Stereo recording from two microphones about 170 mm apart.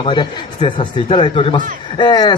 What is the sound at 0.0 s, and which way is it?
Speech, 30° left (ahead or behind).